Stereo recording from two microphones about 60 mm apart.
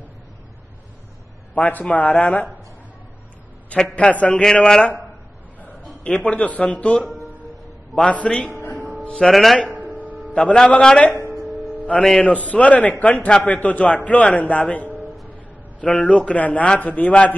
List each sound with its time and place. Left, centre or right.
1.5 s a man's voice: left
3.7 s a man's voice: centre
4.6 s a man's voice: centre
6.0 s a man's voice: left
8.5 s music: left
9.2 s a man's voice: centre
9.9 s music: right
10.3 s a man's voice: centre
12.2 s a man's voice: left